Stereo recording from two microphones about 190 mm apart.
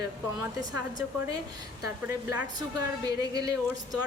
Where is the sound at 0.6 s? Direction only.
20° right (ahead or behind).